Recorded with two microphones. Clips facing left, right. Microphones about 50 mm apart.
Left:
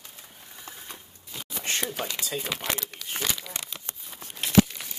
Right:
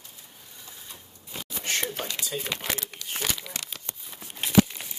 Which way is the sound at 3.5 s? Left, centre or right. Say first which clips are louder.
Even; centre.